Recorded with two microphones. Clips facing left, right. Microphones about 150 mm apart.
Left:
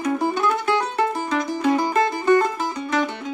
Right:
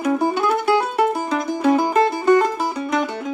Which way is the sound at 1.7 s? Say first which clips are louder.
Right 4 dB; 30° right (ahead or behind).